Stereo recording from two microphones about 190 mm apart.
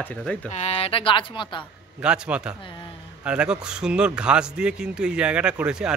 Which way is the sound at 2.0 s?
5° right (ahead or behind).